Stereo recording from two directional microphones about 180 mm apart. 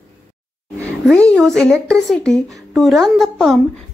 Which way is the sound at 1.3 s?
Centre (ahead or behind).